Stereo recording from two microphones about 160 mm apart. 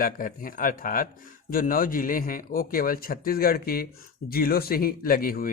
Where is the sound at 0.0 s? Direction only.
60° left (ahead or behind).